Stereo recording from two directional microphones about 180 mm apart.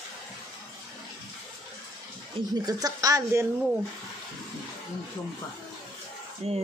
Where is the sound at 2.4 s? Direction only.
30° right (ahead or behind).